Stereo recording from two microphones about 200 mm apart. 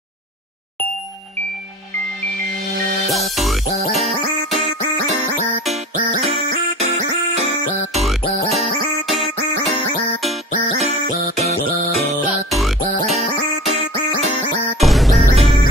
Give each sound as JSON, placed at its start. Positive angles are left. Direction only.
{"t": 3.1, "sound": "music", "side_deg": 0}
{"t": 6.5, "sound": "music", "side_deg": -35}
{"t": 10.8, "sound": "music", "side_deg": -35}
{"t": 12.4, "sound": "music", "side_deg": 0}
{"t": 14.8, "sound": "music", "side_deg": 0}
{"t": 15.2, "sound": "music", "side_deg": -30}